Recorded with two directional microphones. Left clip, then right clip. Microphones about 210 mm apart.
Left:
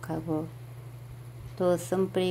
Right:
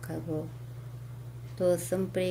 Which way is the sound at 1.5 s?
15° left (ahead or behind).